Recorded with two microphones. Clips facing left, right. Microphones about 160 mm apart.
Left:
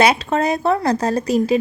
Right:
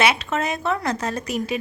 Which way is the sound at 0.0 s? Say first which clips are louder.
Left 5 dB; 35° left (ahead or behind).